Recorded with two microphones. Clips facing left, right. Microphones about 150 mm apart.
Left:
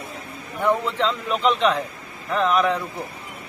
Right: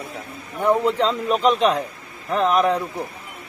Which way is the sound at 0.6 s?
40° right (ahead or behind).